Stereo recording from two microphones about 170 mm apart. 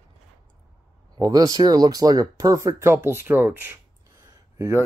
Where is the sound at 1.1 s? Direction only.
20° right (ahead or behind).